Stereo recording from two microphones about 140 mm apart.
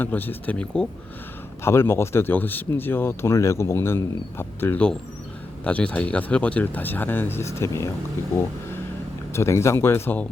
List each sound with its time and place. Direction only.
0.0 s speech: 15° left (ahead or behind)
1.6 s speech: 15° left (ahead or behind)
9.3 s speech: 20° left (ahead or behind)